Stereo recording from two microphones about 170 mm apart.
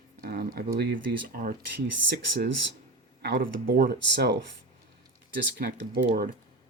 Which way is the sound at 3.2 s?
70° right (ahead or behind).